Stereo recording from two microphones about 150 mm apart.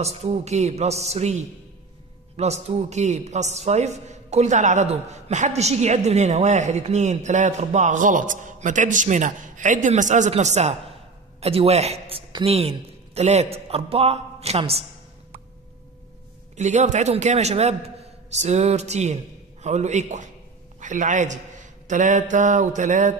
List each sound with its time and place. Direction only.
0.0 s a man's voice: 45° right (ahead or behind)
12.3 s a woman's voice: 30° right (ahead or behind)
12.5 s a man's voice: 45° right (ahead or behind)
16.5 s a man's voice: 50° right (ahead or behind)